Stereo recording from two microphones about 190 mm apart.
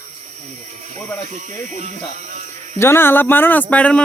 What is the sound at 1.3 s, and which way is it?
Speech, 40° right (ahead or behind).